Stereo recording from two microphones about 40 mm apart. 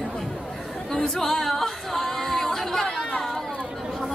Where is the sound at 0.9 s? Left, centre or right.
Centre.